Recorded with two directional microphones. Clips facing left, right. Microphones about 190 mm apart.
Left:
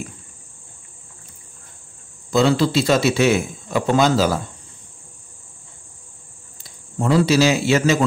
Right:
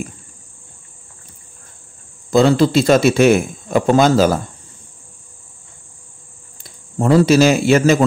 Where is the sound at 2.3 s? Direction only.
50° right (ahead or behind).